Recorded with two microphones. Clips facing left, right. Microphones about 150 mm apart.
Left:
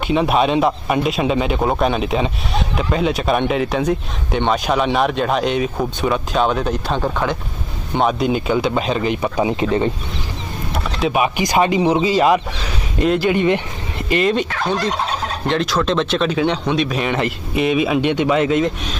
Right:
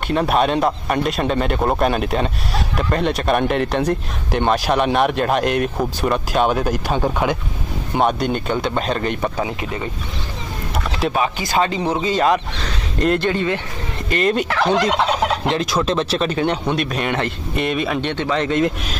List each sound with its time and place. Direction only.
0.0 s speech: centre (ahead or behind); by 7.3 s 15° right (ahead or behind)
7.9 s speech: centre (ahead or behind)
9.4 s speech: 25° left (ahead or behind)
11.1 s speech: 15° left (ahead or behind)
13.3 s speech: 20° left (ahead or behind)
14.2 s speech: 5° right (ahead or behind)
14.5 s fowl: 85° right
15.5 s speech: 5° right (ahead or behind)